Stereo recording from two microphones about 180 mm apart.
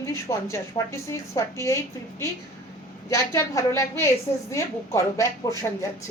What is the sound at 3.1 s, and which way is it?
A woman's voice, 15° left (ahead or behind).